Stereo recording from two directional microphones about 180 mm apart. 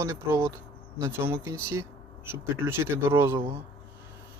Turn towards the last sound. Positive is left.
turn(degrees=-15)  # may be behind; listen again after turning